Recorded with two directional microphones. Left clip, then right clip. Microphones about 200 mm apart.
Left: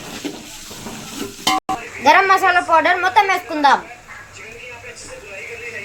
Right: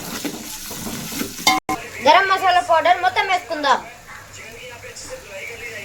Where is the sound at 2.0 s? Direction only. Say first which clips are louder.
Left 2 dB; 15° left (ahead or behind).